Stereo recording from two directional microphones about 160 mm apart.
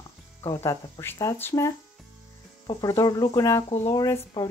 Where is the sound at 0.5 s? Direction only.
20° left (ahead or behind).